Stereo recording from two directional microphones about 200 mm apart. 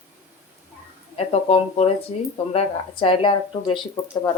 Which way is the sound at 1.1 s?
30° left (ahead or behind).